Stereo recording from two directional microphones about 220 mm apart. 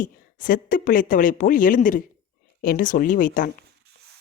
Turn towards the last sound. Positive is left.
turn(degrees=40)  # may be behind; listen again after turning